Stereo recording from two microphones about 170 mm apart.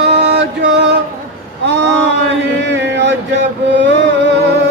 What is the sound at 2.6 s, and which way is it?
Mantra, 90° right.